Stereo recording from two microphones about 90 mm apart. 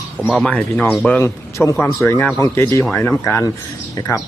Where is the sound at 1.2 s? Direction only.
35° left (ahead or behind).